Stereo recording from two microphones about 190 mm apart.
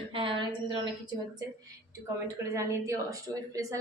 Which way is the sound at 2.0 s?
15° right (ahead or behind).